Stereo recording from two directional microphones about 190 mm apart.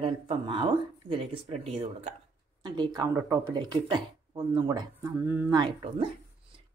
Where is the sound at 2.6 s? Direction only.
20° right (ahead or behind).